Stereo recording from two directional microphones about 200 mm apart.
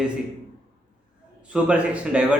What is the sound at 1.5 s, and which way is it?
Speech, 5° right (ahead or behind).